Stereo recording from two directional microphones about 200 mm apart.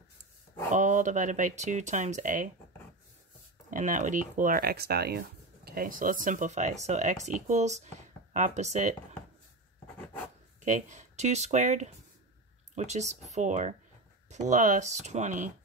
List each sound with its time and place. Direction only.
0.7 s speech: 40° right (ahead or behind)
3.7 s speech: 40° right (ahead or behind)
10.6 s speech: 35° right (ahead or behind)